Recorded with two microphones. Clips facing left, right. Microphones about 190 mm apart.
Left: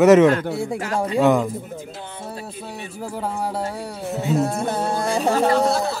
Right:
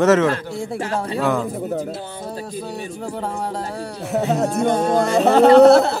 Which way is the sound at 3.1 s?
5° left (ahead or behind).